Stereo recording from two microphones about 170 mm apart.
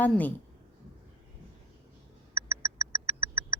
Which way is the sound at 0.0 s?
10° left (ahead or behind).